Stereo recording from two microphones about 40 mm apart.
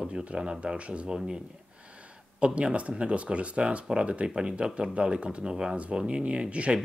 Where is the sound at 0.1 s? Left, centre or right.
Right.